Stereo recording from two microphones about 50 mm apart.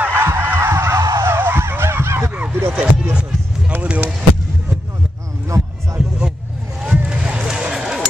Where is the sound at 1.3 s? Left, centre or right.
Right.